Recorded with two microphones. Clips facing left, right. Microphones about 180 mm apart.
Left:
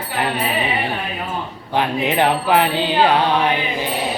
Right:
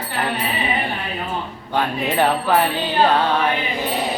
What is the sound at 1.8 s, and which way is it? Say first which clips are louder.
Speech: left 1 dB; 15° left (ahead or behind).